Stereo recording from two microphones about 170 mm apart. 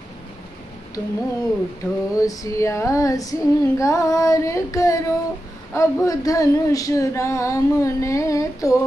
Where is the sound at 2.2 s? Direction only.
20° left (ahead or behind).